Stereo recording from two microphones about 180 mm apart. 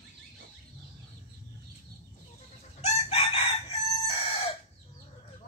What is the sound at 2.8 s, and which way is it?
Chicken, 35° left (ahead or behind).